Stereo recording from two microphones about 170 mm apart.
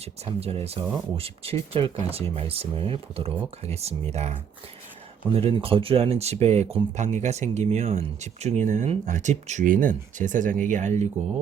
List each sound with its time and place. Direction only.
0.3 s speech: 35° right (ahead or behind)